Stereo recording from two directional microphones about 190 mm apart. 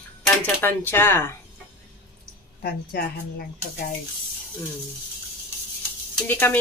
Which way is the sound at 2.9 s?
55° left (ahead or behind).